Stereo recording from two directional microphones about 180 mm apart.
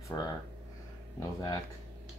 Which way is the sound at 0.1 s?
15° left (ahead or behind).